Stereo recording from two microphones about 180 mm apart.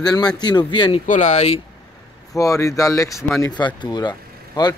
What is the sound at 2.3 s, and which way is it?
Speech, 20° left (ahead or behind).